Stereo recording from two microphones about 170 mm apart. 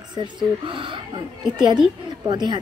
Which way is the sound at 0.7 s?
30° right (ahead or behind).